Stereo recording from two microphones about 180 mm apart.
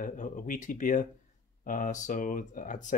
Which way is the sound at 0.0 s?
45° left (ahead or behind).